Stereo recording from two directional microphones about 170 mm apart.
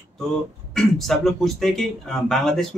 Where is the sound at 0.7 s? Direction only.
Centre (ahead or behind).